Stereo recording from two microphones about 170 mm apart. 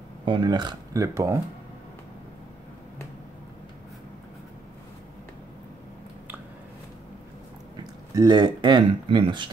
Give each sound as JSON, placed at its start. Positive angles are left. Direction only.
{"t": 0.2, "sound": "speech", "side_deg": -30}
{"t": 7.7, "sound": "speech", "side_deg": -20}